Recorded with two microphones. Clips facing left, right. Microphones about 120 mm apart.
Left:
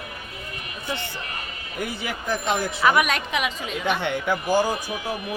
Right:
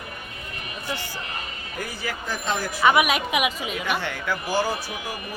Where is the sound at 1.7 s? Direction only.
20° left (ahead or behind).